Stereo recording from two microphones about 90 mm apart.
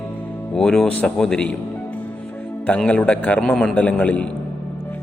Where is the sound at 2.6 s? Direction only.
10° left (ahead or behind).